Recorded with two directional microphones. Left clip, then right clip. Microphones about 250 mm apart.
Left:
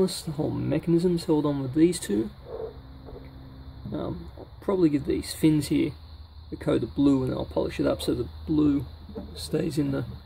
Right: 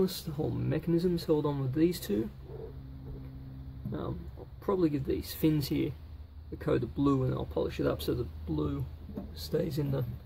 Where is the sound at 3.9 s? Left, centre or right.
Centre.